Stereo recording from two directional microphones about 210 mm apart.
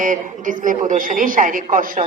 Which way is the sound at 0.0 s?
40° right (ahead or behind).